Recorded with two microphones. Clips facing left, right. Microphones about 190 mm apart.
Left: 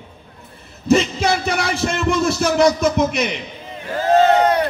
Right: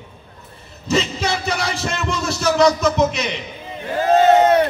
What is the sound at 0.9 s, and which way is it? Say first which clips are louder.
Speech: left 4 dB; 55° left (ahead or behind).